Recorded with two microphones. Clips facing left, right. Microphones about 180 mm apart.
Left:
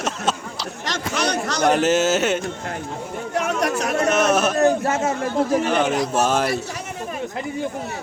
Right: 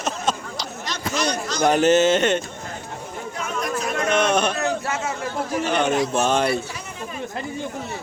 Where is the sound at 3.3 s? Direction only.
75° left (ahead or behind).